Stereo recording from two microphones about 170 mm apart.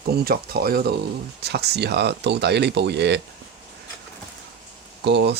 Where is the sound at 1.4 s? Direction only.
75° right (ahead or behind).